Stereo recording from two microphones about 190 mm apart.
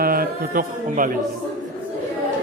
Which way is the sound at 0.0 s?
50° right (ahead or behind).